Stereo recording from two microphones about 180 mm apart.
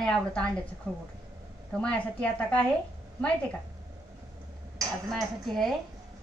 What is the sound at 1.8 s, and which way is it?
Speech, 5° left (ahead or behind).